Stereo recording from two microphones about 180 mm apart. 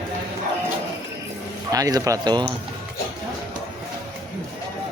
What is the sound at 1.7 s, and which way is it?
Speech, 20° right (ahead or behind).